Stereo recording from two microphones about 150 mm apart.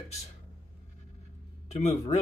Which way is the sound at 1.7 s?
50° left (ahead or behind).